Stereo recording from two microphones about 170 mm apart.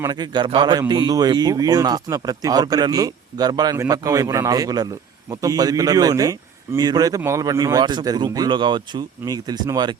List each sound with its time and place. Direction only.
0.0 s a man's voice: 25° right (ahead or behind)